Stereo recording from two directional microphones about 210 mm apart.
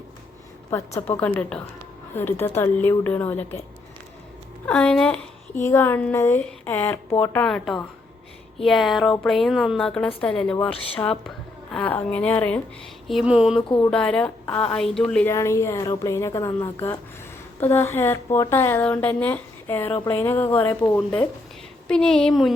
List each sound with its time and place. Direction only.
0.9 s speech: 10° left (ahead or behind)
4.6 s a woman's voice: 5° left (ahead or behind)
13.6 s speech: 20° left (ahead or behind)
13.9 s a woman's voice: 5° left (ahead or behind)